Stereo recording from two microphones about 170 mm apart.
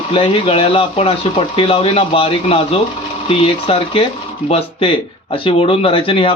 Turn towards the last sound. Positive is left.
turn(degrees=30)  # may be behind; listen again after turning